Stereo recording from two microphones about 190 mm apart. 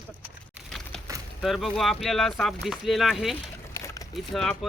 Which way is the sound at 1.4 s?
Centre (ahead or behind).